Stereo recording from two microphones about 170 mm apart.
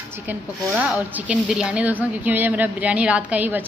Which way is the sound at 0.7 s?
5° right (ahead or behind).